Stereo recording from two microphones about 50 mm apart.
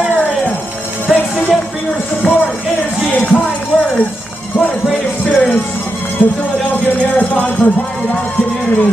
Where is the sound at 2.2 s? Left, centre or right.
Left.